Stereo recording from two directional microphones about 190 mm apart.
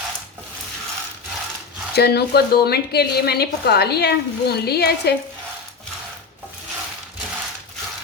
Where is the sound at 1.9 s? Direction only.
60° left (ahead or behind).